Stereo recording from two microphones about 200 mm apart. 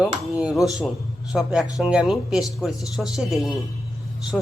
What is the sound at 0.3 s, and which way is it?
Speech, centre (ahead or behind).